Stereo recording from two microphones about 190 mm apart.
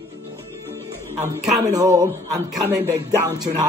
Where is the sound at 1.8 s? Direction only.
20° right (ahead or behind).